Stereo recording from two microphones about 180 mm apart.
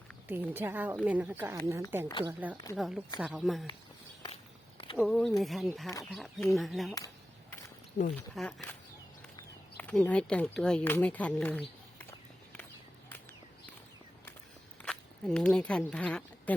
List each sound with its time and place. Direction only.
0.3 s speech: 10° right (ahead or behind)
4.9 s speech: centre (ahead or behind)
8.0 s speech: 35° left (ahead or behind)
8.4 s speech: centre (ahead or behind)
14.8 s speech: 5° left (ahead or behind)